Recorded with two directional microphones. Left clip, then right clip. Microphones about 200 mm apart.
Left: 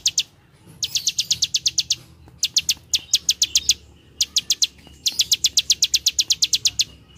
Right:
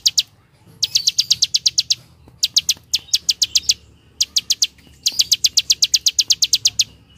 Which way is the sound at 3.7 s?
5° right (ahead or behind).